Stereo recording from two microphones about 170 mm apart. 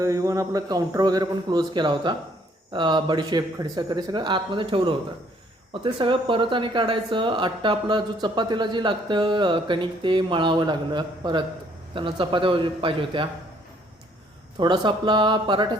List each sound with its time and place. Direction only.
0.0 s speech: 20° right (ahead or behind)
14.6 s speech: 25° right (ahead or behind)